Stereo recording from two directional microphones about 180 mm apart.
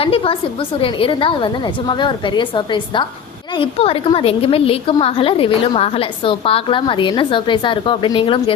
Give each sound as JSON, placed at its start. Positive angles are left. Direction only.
{"t": 0.0, "sound": "a woman's voice", "side_deg": 30}